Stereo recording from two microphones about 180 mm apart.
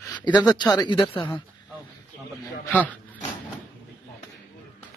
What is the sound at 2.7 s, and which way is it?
Speech, 10° left (ahead or behind).